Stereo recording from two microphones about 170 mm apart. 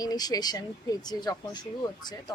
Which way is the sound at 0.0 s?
25° left (ahead or behind).